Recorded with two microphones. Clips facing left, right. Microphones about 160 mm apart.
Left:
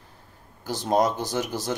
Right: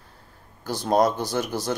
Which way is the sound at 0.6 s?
20° left (ahead or behind).